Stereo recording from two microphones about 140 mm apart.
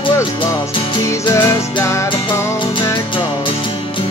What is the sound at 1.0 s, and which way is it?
Music, 20° left (ahead or behind).